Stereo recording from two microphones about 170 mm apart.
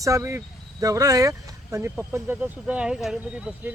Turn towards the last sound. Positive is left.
turn(degrees=-5)  # may be behind; listen again after turning